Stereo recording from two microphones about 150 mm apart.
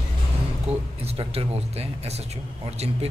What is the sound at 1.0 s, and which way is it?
Speech, 40° right (ahead or behind).